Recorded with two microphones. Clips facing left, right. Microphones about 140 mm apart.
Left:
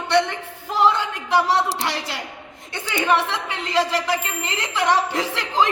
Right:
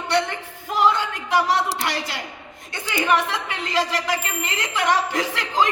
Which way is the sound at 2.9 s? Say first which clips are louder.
Left 1 dB; 25° left (ahead or behind).